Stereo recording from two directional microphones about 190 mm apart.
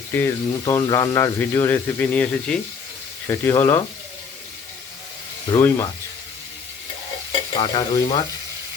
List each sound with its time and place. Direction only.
0.1 s speech: 10° left (ahead or behind)
5.5 s speech: 15° left (ahead or behind)
7.5 s stir: 25° left (ahead or behind)